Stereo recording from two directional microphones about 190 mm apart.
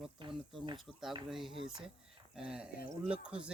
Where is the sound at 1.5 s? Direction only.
25° right (ahead or behind).